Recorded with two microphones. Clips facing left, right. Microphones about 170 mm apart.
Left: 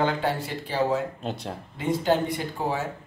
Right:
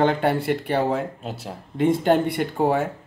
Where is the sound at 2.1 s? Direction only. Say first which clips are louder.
Right 4 dB; 60° right (ahead or behind).